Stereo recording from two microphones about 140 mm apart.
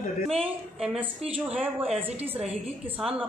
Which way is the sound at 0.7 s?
5° right (ahead or behind).